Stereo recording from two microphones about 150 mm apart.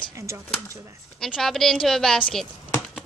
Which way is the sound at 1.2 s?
Centre (ahead or behind).